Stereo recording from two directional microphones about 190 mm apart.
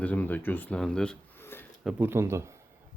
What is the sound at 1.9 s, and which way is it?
Speech, 15° right (ahead or behind).